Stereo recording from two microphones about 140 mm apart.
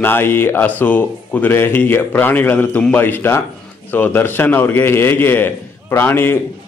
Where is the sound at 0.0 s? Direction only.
15° left (ahead or behind).